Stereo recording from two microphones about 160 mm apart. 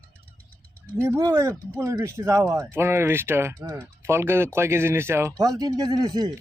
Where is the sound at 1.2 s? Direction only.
20° right (ahead or behind).